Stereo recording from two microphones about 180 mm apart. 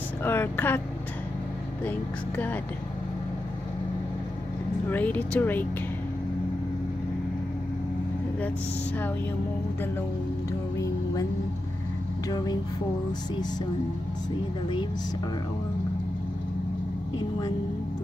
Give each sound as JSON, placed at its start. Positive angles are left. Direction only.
{"t": 0.2, "sound": "speech", "side_deg": 10}
{"t": 1.9, "sound": "speech", "side_deg": 10}
{"t": 4.8, "sound": "speech", "side_deg": 10}
{"t": 12.3, "sound": "a sound", "side_deg": 20}